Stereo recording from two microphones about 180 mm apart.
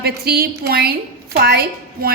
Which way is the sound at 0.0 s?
60° right (ahead or behind).